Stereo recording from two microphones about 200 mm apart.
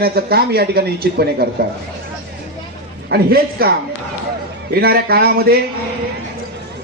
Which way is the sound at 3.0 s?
50° right (ahead or behind).